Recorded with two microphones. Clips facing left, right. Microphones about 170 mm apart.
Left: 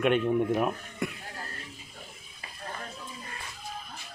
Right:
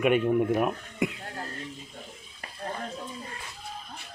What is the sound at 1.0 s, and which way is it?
Speech, 20° right (ahead or behind).